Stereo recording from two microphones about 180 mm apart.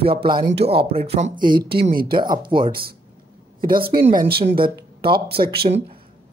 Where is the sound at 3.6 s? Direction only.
55° right (ahead or behind).